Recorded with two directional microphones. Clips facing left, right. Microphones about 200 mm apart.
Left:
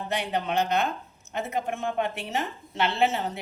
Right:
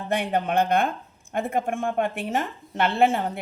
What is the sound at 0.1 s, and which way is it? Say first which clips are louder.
A woman's voice: right 5 dB; 55° right (ahead or behind).